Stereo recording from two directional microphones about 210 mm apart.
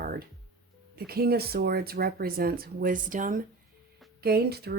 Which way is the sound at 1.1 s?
45° right (ahead or behind).